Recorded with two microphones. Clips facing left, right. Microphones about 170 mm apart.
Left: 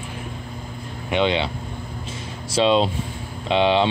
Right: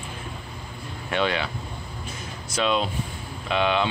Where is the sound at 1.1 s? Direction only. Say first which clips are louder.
Left 4 dB; 20° left (ahead or behind).